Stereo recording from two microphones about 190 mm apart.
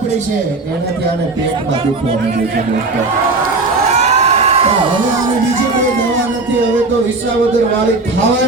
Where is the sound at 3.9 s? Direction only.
35° right (ahead or behind).